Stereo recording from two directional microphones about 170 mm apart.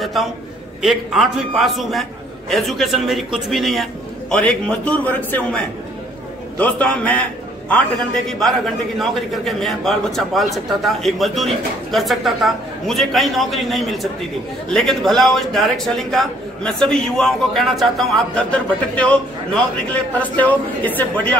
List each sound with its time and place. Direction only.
0.0 s a man's voice: centre (ahead or behind)
8.3 s a man's voice: centre (ahead or behind)